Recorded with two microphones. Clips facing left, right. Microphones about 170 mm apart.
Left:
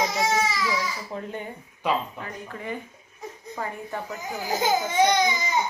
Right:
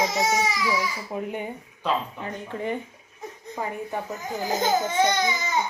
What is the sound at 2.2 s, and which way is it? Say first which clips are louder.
Speech: right 5 dB; 25° right (ahead or behind).